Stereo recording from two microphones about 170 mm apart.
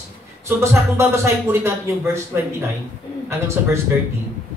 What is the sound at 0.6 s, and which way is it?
Speech, 15° right (ahead or behind).